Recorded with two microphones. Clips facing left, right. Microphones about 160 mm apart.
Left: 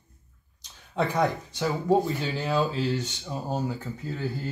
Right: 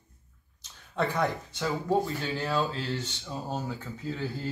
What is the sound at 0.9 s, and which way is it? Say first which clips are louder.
Speech: left 3 dB; 15° left (ahead or behind).